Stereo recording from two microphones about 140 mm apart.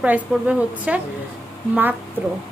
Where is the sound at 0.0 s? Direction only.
10° right (ahead or behind).